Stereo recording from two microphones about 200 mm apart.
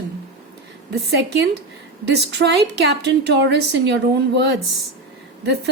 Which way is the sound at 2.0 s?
55° right (ahead or behind).